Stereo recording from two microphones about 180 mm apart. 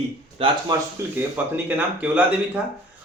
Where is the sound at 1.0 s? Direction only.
15° right (ahead or behind).